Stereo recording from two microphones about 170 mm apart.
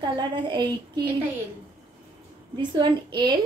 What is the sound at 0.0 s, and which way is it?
A woman's voice, 25° right (ahead or behind).